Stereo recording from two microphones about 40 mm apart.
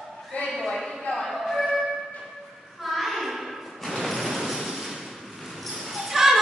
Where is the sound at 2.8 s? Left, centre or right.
Centre.